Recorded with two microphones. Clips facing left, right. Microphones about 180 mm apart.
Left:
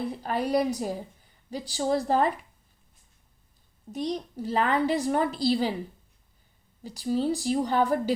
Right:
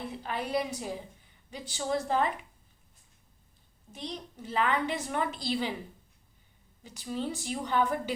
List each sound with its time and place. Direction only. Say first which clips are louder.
0.2 s a woman's voice: left 6 dB; 40° left (ahead or behind)
3.9 s a woman's voice: left 10 dB; 40° left (ahead or behind)
6.8 s a woman's voice: left 8 dB; 35° left (ahead or behind)